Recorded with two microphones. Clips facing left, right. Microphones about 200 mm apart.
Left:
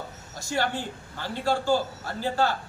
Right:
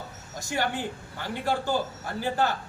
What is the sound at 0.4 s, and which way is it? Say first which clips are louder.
A man's voice: left 1 dB; 15° right (ahead or behind).